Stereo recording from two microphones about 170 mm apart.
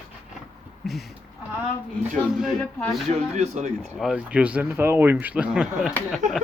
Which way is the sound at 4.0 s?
5° right (ahead or behind).